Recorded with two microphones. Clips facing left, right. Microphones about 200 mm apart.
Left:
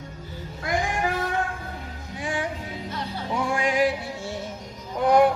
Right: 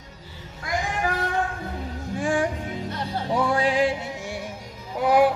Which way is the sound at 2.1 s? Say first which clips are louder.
Right 6 dB; 50° right (ahead or behind).